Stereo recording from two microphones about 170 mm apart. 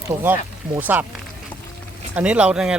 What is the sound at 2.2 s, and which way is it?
Speech, 5° right (ahead or behind).